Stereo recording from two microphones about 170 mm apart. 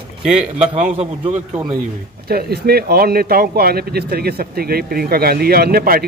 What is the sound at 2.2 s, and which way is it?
Speech, 65° right (ahead or behind).